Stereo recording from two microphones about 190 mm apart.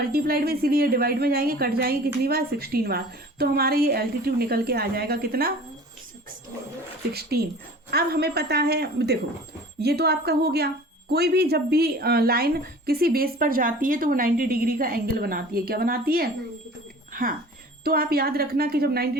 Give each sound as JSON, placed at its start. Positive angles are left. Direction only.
{"t": 0.1, "sound": "a woman's voice", "side_deg": -55}
{"t": 7.1, "sound": "a woman's voice", "side_deg": -55}
{"t": 17.8, "sound": "a woman's voice", "side_deg": -50}